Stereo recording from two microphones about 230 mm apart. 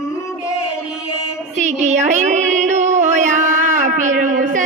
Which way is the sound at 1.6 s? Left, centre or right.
Right.